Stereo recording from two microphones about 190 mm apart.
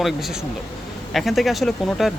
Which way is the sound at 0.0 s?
Centre (ahead or behind).